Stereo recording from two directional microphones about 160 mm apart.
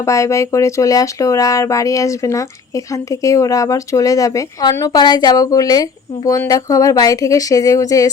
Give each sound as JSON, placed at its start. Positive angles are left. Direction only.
{"t": 0.0, "sound": "speech", "side_deg": 20}